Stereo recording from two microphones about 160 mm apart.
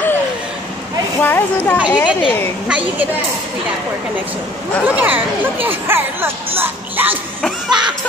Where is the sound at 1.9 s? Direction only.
30° left (ahead or behind).